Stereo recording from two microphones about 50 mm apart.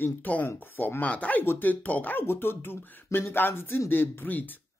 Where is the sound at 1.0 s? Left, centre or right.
Left.